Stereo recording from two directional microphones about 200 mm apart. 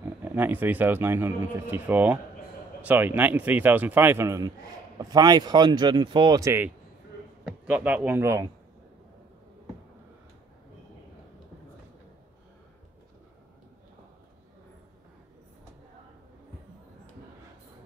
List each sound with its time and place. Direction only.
0.2 s a man's voice: 10° right (ahead or behind)